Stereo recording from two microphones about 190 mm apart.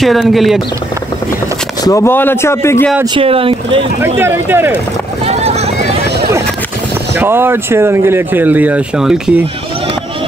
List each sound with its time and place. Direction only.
0.0 s speech: centre (ahead or behind)
1.9 s speech: 15° left (ahead or behind)
3.2 s speech: 30° right (ahead or behind)
4.2 s speech: 10° right (ahead or behind)
5.2 s clip-clop: 35° right (ahead or behind)
7.2 s speech: 10° right (ahead or behind)